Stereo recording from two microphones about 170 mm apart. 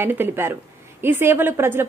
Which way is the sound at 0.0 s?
10° right (ahead or behind).